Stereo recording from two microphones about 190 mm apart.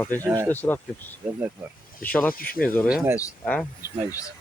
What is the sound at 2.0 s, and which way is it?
Speech, 10° left (ahead or behind).